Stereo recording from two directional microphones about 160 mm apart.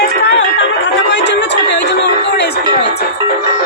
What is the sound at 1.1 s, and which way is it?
Speech, 90° left.